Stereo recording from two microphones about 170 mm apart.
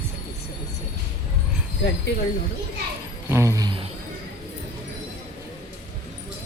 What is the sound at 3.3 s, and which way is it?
Jingle bell, 15° right (ahead or behind).